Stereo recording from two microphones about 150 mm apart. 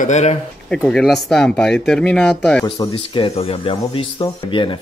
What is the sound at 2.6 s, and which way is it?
Speech, 35° left (ahead or behind).